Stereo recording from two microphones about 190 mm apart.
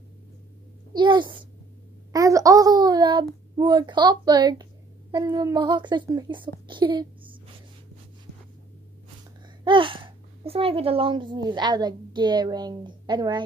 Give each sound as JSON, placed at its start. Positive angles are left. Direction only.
{"t": 0.9, "sound": "speech", "side_deg": -25}
{"t": 2.1, "sound": "a sound", "side_deg": -15}
{"t": 3.5, "sound": "speech", "side_deg": -20}
{"t": 9.7, "sound": "speech", "side_deg": -25}